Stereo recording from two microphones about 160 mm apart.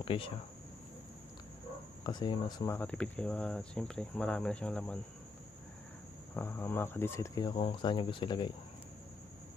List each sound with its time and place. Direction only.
0.0 s speech: 35° left (ahead or behind)
2.0 s speech: 25° left (ahead or behind)
2.7 s speech: 10° left (ahead or behind)
6.3 s speech: 15° left (ahead or behind); by 8.5 s 30° left (ahead or behind)